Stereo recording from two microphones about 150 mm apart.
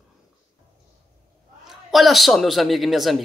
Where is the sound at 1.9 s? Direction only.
Centre (ahead or behind).